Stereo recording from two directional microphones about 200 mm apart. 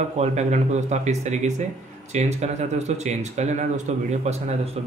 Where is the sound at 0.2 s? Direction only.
35° right (ahead or behind).